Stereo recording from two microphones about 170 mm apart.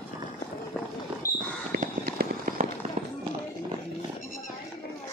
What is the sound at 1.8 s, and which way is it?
Fireworks, 55° right (ahead or behind).